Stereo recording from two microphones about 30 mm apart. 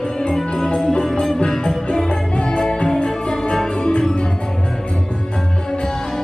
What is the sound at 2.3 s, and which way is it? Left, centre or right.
Music, left.